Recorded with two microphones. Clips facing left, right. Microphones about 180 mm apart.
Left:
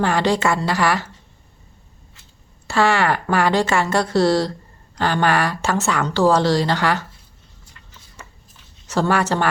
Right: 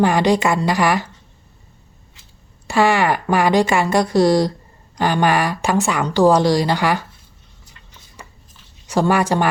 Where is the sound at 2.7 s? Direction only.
15° right (ahead or behind).